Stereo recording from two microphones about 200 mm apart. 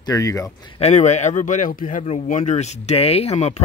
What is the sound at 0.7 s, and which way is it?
Speech, 35° left (ahead or behind).